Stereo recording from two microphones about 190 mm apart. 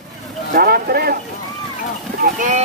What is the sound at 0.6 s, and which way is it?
Speech, 55° right (ahead or behind).